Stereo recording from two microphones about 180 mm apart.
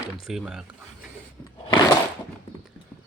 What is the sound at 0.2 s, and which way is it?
Speech, centre (ahead or behind).